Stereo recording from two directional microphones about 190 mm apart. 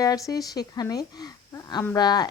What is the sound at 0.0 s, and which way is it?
A woman's voice, 20° left (ahead or behind).